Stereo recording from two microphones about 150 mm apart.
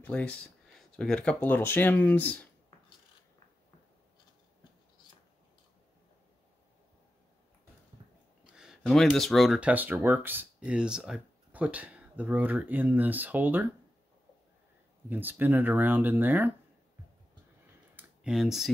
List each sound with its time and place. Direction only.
0.0 s speech: 10° left (ahead or behind)
8.5 s speech: 5° right (ahead or behind)
15.0 s speech: 15° right (ahead or behind)
17.9 s a sound: 5° right (ahead or behind)